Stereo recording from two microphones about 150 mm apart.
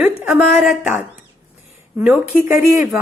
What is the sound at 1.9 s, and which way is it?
Speech, 10° right (ahead or behind).